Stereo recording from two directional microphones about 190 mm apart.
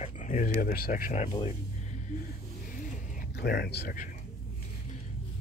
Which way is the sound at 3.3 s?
55° left (ahead or behind).